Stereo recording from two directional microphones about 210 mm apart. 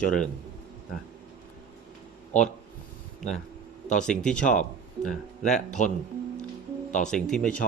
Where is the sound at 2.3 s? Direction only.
35° left (ahead or behind).